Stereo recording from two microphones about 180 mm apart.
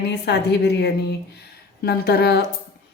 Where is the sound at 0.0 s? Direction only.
65° left (ahead or behind).